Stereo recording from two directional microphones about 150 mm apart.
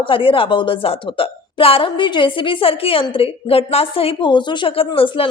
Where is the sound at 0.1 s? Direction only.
35° left (ahead or behind).